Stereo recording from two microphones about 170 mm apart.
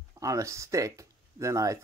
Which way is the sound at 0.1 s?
20° right (ahead or behind).